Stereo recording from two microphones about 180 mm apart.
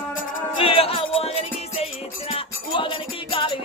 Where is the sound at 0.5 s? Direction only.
30° left (ahead or behind).